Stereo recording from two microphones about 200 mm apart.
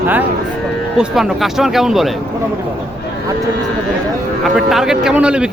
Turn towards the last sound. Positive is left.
turn(degrees=-5)  # may be behind; listen again after turning